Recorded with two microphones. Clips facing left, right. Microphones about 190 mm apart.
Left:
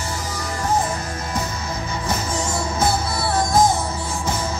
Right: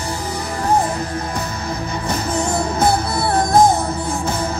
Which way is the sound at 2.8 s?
60° right (ahead or behind).